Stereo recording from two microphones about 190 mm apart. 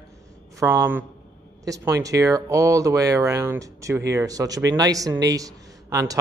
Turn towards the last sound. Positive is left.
turn(degrees=-20)  # may be behind; listen again after turning